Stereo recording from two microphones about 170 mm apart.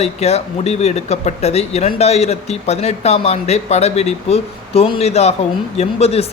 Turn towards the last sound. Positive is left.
turn(degrees=35)  # may be behind; listen again after turning